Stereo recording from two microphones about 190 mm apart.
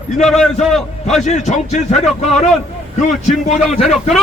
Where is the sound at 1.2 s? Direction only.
40° left (ahead or behind).